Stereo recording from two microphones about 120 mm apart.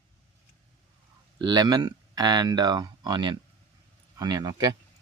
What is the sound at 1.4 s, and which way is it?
Speech, 35° right (ahead or behind).